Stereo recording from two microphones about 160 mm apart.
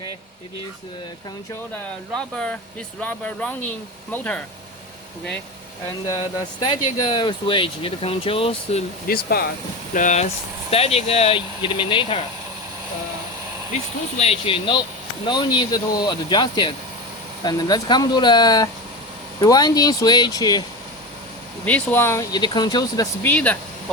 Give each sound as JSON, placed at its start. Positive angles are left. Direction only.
{"t": 2.1, "sound": "speech", "side_deg": 5}
{"t": 6.6, "sound": "speech", "side_deg": 30}
{"t": 9.0, "sound": "speech", "side_deg": 70}
{"t": 9.9, "sound": "speech", "side_deg": 50}
{"t": 10.7, "sound": "speech", "side_deg": 40}
{"t": 14.2, "sound": "speech", "side_deg": 35}
{"t": 21.6, "sound": "speech", "side_deg": 10}
{"t": 23.2, "sound": "speech", "side_deg": 10}